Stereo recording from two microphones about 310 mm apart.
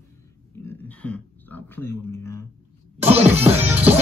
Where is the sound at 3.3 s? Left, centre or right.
Centre.